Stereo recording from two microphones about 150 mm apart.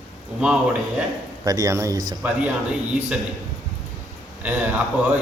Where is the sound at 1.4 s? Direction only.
25° right (ahead or behind).